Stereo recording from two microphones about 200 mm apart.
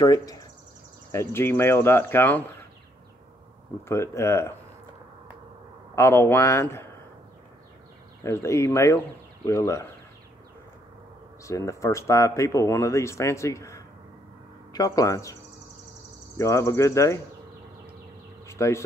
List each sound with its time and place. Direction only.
0.0 s speech: 20° left (ahead or behind)
3.9 s speech: 15° left (ahead or behind)
5.9 s speech: 15° left (ahead or behind)
8.2 s speech: 15° left (ahead or behind)
11.4 s speech: 15° left (ahead or behind)
16.3 s speech: 15° left (ahead or behind)
18.5 s bee: 15° left (ahead or behind)